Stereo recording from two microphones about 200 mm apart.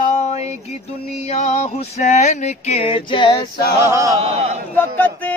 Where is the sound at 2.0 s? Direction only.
35° left (ahead or behind).